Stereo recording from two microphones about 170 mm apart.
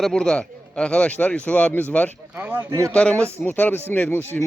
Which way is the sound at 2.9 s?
5° left (ahead or behind).